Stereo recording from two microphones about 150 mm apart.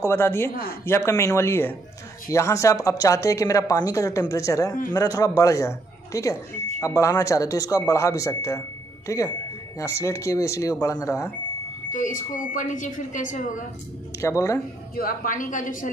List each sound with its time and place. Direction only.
0.0 s a woman's voice: 15° left (ahead or behind)
11.9 s a woman's voice: 60° left (ahead or behind)
14.2 s a woman's voice: 20° left (ahead or behind)
15.0 s a woman's voice: 70° left (ahead or behind)